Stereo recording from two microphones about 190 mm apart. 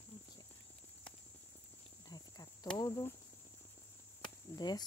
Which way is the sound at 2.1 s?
20° left (ahead or behind).